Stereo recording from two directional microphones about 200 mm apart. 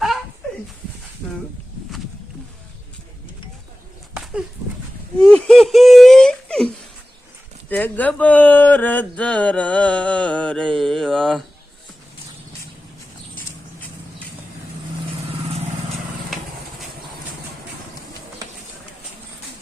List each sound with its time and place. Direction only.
5.2 s whimper: 5° left (ahead or behind)
7.7 s speech: 10° left (ahead or behind)